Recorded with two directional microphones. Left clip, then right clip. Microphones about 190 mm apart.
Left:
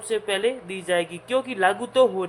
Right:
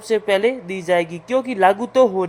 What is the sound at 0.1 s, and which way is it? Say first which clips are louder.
A man's voice: right 6 dB; 25° right (ahead or behind).